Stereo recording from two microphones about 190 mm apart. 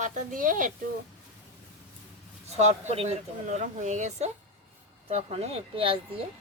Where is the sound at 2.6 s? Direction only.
35° right (ahead or behind).